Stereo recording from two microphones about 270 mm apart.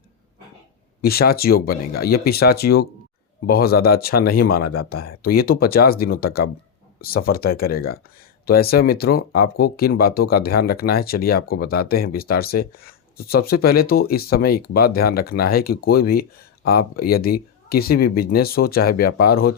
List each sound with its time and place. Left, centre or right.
1.0 s speech: left